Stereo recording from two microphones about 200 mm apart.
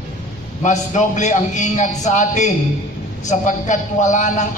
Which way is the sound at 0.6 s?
35° left (ahead or behind).